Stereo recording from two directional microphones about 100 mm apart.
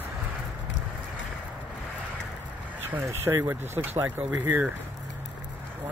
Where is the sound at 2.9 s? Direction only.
25° right (ahead or behind).